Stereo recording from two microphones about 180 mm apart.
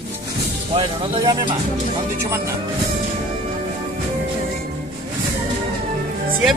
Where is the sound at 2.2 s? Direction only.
15° right (ahead or behind).